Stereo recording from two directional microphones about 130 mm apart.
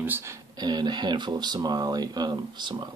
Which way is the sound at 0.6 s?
35° right (ahead or behind).